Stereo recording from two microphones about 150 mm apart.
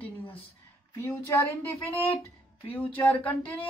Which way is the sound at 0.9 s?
20° left (ahead or behind).